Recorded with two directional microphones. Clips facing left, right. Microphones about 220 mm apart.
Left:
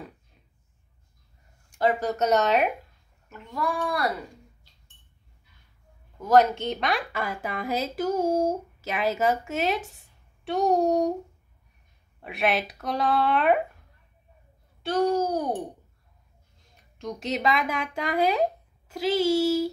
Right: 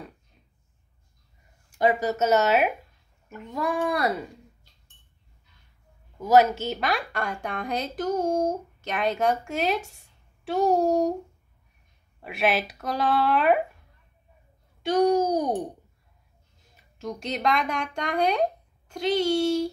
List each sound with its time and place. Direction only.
1.8 s a woman's voice: 10° right (ahead or behind)
3.3 s a child's voice: 20° right (ahead or behind)
6.1 s a woman's voice: 10° right (ahead or behind)
12.2 s a woman's voice: centre (ahead or behind)
14.8 s a child's voice: 15° right (ahead or behind)
16.7 s speech: centre (ahead or behind)